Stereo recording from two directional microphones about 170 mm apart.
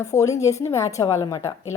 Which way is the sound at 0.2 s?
20° left (ahead or behind).